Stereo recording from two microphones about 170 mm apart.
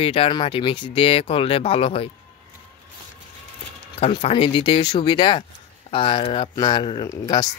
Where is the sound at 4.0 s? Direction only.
35° left (ahead or behind).